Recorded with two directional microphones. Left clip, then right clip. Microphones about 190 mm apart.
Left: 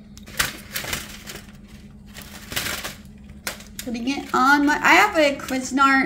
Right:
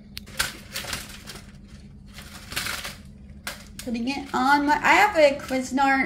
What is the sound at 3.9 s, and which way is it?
A woman's voice, 15° left (ahead or behind).